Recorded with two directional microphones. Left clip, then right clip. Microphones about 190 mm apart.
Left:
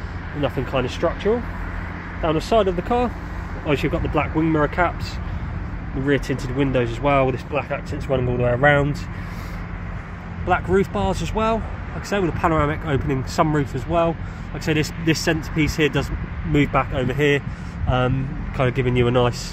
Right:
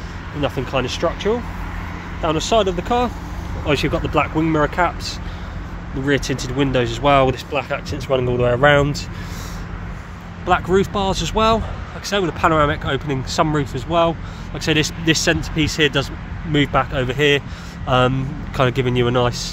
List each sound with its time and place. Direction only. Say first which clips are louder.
0.4 s speech: right 2 dB; centre (ahead or behind)
10.4 s speech: right 3 dB; centre (ahead or behind)
17.8 s speech: right 5 dB; 20° right (ahead or behind); by 19.3 s centre (ahead or behind)